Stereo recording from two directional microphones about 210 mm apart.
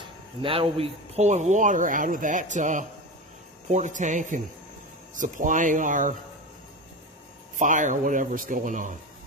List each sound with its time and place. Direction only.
0.4 s speech: 25° right (ahead or behind)
7.5 s speech: 40° right (ahead or behind)